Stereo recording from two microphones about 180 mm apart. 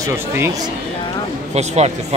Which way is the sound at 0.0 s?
15° right (ahead or behind).